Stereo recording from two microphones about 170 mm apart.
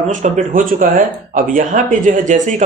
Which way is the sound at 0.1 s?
50° right (ahead or behind).